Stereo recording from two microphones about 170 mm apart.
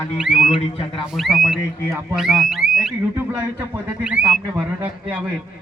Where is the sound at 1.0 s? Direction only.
Centre (ahead or behind).